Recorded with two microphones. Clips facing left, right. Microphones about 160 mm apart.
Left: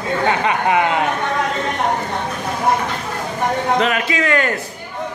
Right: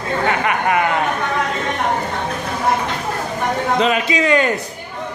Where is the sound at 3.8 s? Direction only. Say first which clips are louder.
Right 2 dB; 20° right (ahead or behind).